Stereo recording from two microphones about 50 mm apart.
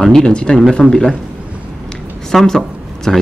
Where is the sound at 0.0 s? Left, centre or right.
Centre.